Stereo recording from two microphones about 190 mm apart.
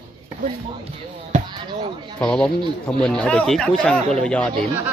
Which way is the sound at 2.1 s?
5° left (ahead or behind).